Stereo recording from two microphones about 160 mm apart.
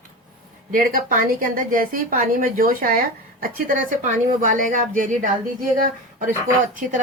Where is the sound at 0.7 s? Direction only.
60° right (ahead or behind).